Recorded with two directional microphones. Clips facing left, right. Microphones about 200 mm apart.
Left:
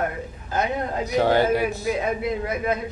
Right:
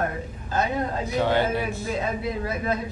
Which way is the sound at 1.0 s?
40° left (ahead or behind).